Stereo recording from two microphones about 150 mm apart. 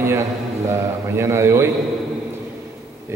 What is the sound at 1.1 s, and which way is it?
Speech, 15° right (ahead or behind).